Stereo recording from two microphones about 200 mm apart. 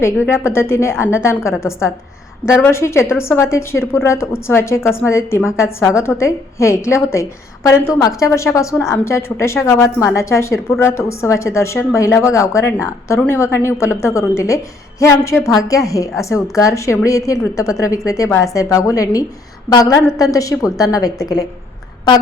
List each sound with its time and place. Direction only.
0.3 s a woman's voice: 10° left (ahead or behind)